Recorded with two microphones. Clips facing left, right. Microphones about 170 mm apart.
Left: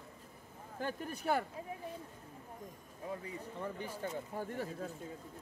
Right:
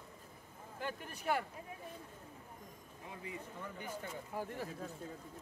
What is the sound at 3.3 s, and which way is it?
Speech, 35° left (ahead or behind).